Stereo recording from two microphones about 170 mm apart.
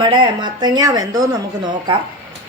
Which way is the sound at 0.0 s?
25° right (ahead or behind).